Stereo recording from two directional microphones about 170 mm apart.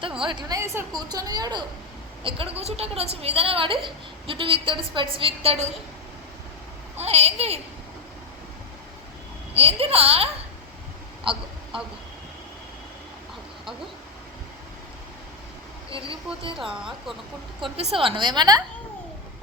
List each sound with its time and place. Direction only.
0.3 s a woman's voice: 25° right (ahead or behind)
7.0 s a woman's voice: 40° right (ahead or behind)
9.6 s speech: 35° right (ahead or behind)
11.3 s a woman's voice: 30° right (ahead or behind)
15.9 s speech: 30° right (ahead or behind)
16.6 s speech: 5° right (ahead or behind)
17.6 s a woman's voice: 35° right (ahead or behind)